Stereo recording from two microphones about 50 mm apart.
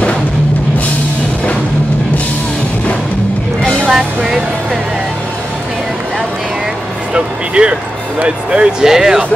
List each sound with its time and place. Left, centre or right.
3.9 s music: centre
7.2 s music: right
8.5 s speech: centre